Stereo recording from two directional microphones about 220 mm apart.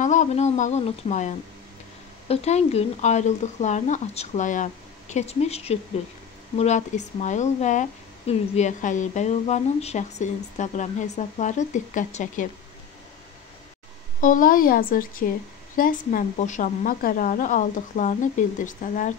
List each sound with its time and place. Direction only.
0.0 s a woman's voice: 35° left (ahead or behind)
14.2 s a woman's voice: 40° left (ahead or behind)